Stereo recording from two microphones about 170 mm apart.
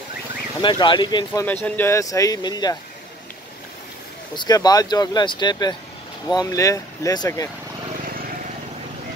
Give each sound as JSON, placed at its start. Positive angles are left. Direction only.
{"t": 0.6, "sound": "speech", "side_deg": 30}
{"t": 1.4, "sound": "speech", "side_deg": 10}
{"t": 4.4, "sound": "speech", "side_deg": 25}